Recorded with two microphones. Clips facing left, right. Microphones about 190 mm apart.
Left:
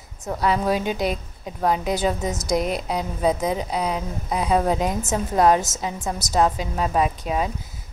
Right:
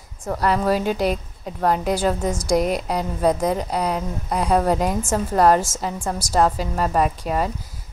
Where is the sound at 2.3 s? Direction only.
10° right (ahead or behind).